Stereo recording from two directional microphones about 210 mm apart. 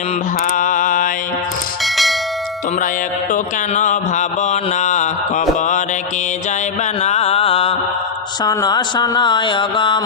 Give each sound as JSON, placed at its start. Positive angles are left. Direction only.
{"t": 0.4, "sound": "mantra", "side_deg": 40}
{"t": 1.8, "sound": "bell", "side_deg": 0}
{"t": 3.3, "sound": "mantra", "side_deg": 35}
{"t": 7.0, "sound": "mantra", "side_deg": 30}
{"t": 8.4, "sound": "a sound", "side_deg": 20}